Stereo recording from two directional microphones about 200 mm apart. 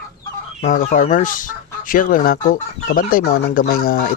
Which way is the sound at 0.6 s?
40° left (ahead or behind).